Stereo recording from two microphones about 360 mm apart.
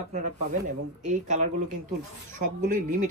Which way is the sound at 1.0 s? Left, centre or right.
Centre.